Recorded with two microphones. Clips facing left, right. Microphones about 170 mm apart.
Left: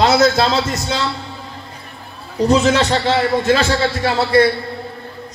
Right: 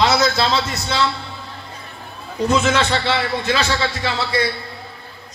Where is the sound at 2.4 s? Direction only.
35° left (ahead or behind).